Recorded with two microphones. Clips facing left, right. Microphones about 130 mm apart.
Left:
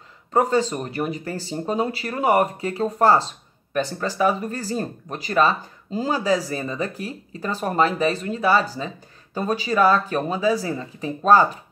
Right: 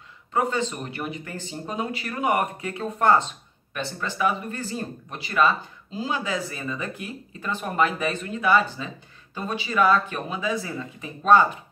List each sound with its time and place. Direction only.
0.3 s speech: 40° left (ahead or behind)